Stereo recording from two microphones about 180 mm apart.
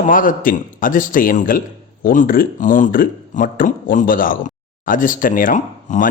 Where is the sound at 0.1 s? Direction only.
50° left (ahead or behind).